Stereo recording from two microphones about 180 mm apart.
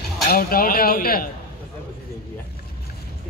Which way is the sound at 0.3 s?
55° left (ahead or behind).